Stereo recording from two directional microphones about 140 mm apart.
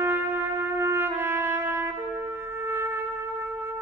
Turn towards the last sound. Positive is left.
turn(degrees=-15)  # may be behind; listen again after turning